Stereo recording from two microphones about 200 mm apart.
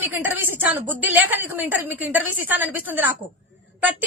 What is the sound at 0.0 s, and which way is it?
A woman's voice, 10° right (ahead or behind).